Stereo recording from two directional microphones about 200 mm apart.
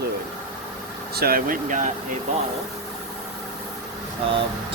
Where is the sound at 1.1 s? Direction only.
50° right (ahead or behind).